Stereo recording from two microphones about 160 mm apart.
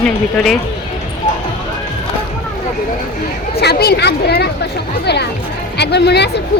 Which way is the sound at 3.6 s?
85° left.